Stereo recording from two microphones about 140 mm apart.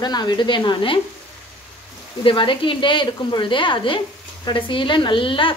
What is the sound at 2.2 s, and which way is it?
Speech, 35° left (ahead or behind).